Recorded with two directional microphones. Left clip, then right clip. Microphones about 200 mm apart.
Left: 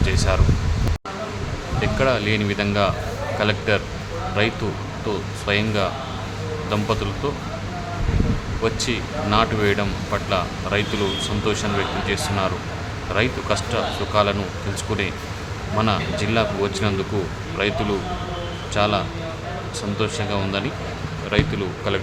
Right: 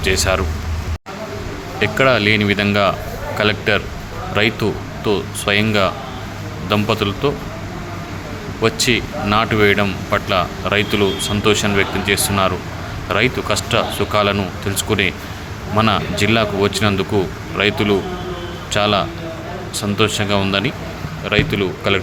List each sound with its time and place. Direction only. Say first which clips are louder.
0.0 s speech: right 6 dB; 25° right (ahead or behind)
1.8 s speech: right 7 dB; 20° right (ahead or behind)
8.6 s speech: right 7 dB; 20° right (ahead or behind)